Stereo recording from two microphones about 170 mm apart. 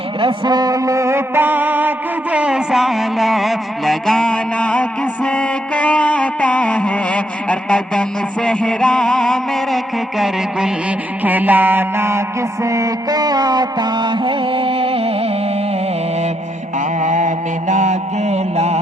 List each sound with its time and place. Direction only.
0.2 s music: 25° right (ahead or behind); by 1.9 s 10° right (ahead or behind)
2.3 s a sound: 5° right (ahead or behind); by 15.3 s 35° right (ahead or behind)
17.0 s mantra: 45° right (ahead or behind)